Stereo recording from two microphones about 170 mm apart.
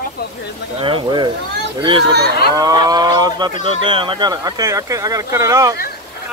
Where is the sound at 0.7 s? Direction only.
30° right (ahead or behind).